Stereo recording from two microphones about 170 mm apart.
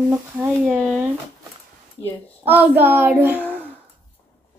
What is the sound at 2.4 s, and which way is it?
Speech, 10° right (ahead or behind).